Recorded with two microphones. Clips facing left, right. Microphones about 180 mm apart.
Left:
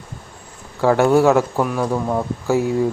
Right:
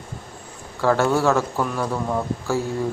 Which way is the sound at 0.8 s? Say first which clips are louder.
Left 5 dB; 15° left (ahead or behind).